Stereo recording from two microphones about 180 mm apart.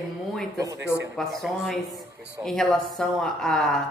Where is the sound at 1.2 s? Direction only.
Centre (ahead or behind).